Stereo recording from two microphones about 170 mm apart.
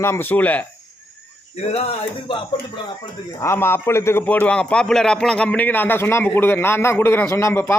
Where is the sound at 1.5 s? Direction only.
40° left (ahead or behind).